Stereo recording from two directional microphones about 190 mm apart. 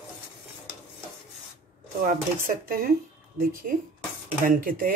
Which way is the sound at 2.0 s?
50° right (ahead or behind).